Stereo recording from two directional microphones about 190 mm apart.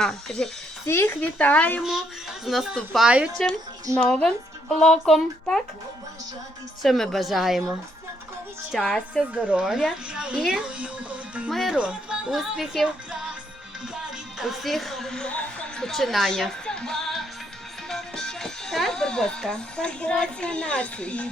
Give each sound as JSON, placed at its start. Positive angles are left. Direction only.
{"t": 0.0, "sound": "a woman's voice", "side_deg": 0}
{"t": 0.9, "sound": "speech", "side_deg": 15}
{"t": 1.8, "sound": "a woman's voice", "side_deg": 0}
{"t": 6.8, "sound": "a woman's voice", "side_deg": 0}
{"t": 8.7, "sound": "a woman's voice", "side_deg": 0}